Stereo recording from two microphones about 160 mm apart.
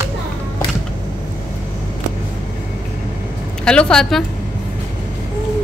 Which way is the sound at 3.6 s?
5° left (ahead or behind).